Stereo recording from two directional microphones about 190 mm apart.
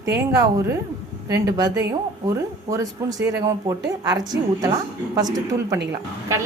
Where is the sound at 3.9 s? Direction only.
20° right (ahead or behind).